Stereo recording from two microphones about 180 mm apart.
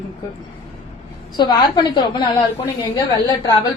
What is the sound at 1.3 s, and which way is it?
Speech, 25° left (ahead or behind).